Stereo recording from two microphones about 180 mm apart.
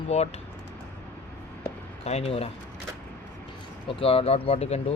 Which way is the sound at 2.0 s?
35° left (ahead or behind).